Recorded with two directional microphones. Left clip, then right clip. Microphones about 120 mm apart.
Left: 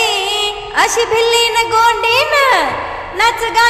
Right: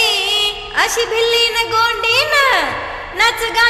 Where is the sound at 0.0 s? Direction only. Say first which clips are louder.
Even; 30° left (ahead or behind).